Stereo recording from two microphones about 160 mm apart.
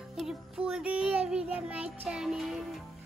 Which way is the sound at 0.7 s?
5° right (ahead or behind).